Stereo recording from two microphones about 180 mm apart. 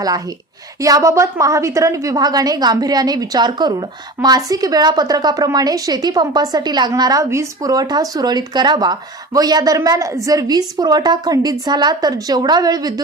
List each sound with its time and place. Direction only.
0.8 s a woman's voice: 20° right (ahead or behind)